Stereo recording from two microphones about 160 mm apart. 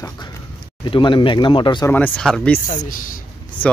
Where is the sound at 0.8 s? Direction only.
30° left (ahead or behind).